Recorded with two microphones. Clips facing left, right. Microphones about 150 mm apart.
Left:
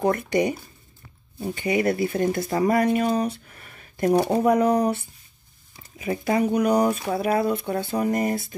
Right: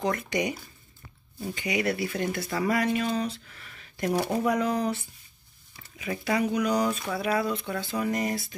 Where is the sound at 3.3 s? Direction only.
50° left (ahead or behind).